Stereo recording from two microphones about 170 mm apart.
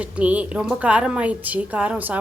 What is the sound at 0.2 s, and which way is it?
A woman's voice, 10° right (ahead or behind).